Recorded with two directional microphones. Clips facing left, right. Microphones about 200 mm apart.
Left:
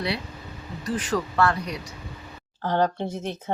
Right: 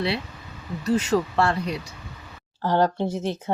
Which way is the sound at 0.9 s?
25° right (ahead or behind).